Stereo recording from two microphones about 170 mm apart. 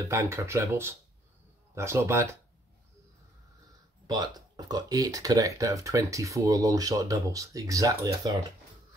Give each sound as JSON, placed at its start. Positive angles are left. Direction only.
{"t": 0.0, "sound": "speech", "side_deg": -15}
{"t": 4.1, "sound": "speech", "side_deg": -25}